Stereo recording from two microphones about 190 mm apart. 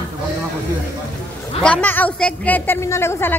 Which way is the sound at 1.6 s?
5° left (ahead or behind).